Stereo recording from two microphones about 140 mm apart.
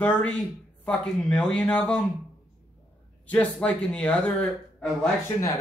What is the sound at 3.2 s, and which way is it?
Speech, 10° left (ahead or behind).